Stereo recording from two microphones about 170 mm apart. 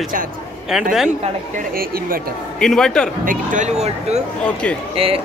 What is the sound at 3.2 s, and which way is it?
Speech, 50° right (ahead or behind).